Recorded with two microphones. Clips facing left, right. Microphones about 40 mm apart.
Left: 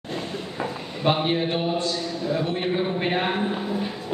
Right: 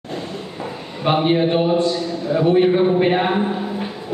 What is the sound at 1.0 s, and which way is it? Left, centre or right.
Speech, centre.